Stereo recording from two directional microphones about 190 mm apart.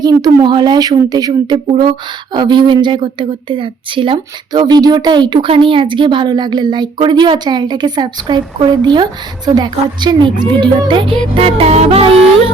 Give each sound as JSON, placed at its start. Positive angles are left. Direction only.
{"t": 0.0, "sound": "a woman's voice", "side_deg": -20}